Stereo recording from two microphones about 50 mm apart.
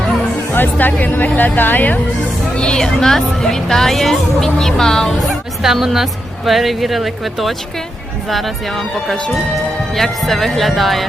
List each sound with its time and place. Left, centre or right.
0.5 s speech: left
2.6 s speech: centre
5.6 s a woman's voice: centre